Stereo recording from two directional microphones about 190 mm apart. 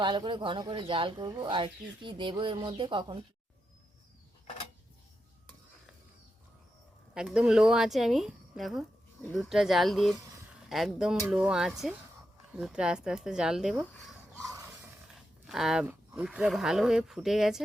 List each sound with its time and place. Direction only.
0.0 s speech: 25° right (ahead or behind)
7.1 s speech: 5° right (ahead or behind)